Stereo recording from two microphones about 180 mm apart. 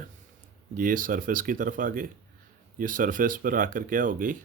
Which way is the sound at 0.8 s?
50° right (ahead or behind).